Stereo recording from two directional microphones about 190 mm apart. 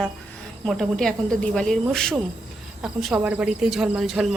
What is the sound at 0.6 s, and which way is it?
A woman's voice, centre (ahead or behind).